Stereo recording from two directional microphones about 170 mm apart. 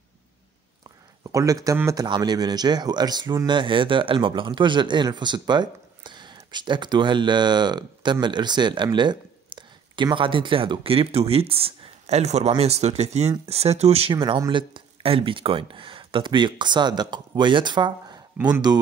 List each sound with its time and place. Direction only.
1.3 s speech: 20° right (ahead or behind); by 14.1 s 35° right (ahead or behind)
14.1 s speech: 25° right (ahead or behind)